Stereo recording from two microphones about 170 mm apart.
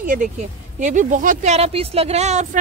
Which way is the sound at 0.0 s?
50° right (ahead or behind).